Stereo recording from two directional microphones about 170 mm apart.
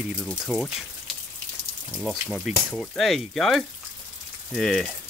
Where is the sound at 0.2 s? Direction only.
5° left (ahead or behind).